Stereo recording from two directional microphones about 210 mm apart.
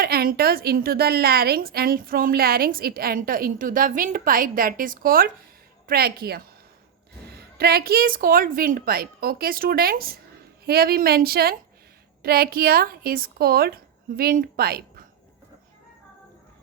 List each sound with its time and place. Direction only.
0.0 s a woman's voice: 45° right (ahead or behind)